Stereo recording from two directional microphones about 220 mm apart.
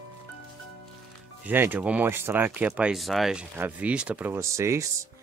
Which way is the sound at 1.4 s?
10° right (ahead or behind).